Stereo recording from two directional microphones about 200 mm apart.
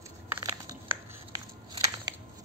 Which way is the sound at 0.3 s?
20° right (ahead or behind).